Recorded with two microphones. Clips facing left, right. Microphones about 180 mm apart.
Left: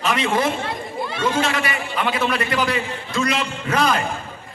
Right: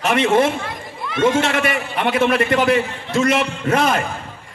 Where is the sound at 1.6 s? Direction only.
55° right (ahead or behind).